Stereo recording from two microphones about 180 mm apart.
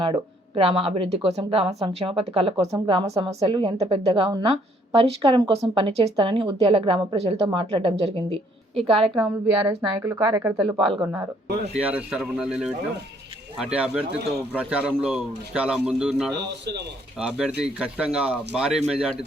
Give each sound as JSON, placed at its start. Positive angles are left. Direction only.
{"t": 0.0, "sound": "a woman's voice", "side_deg": -30}
{"t": 9.2, "sound": "speech", "side_deg": -10}
{"t": 11.4, "sound": "speech", "side_deg": -65}
{"t": 11.8, "sound": "speech", "side_deg": -10}
{"t": 16.3, "sound": "speech", "side_deg": -70}
{"t": 17.2, "sound": "speech", "side_deg": -5}